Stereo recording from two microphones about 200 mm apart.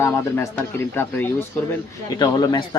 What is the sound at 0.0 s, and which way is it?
Speech, 10° left (ahead or behind).